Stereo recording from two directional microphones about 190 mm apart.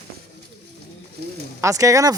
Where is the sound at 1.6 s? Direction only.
15° right (ahead or behind).